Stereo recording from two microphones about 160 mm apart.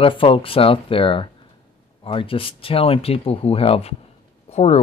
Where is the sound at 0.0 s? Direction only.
35° left (ahead or behind).